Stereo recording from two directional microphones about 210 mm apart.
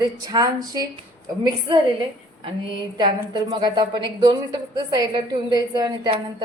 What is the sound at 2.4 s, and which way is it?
A woman's voice, 20° right (ahead or behind).